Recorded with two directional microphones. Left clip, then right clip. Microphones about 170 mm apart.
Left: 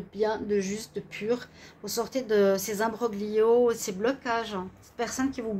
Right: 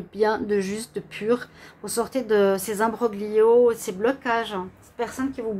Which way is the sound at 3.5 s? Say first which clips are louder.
Right 5 dB; centre (ahead or behind).